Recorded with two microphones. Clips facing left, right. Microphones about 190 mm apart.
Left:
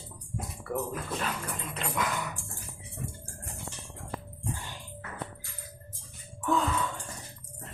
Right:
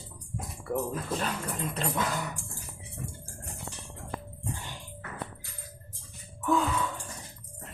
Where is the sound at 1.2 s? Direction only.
35° right (ahead or behind).